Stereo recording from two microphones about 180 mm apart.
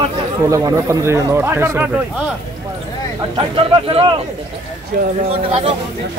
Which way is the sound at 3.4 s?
30° right (ahead or behind).